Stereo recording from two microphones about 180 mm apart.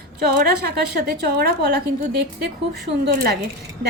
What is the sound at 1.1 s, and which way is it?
Speech, 60° right (ahead or behind).